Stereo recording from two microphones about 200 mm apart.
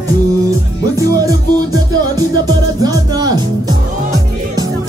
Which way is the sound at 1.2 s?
15° right (ahead or behind).